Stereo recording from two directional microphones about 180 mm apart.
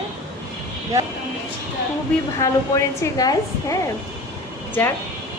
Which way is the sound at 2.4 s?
15° left (ahead or behind).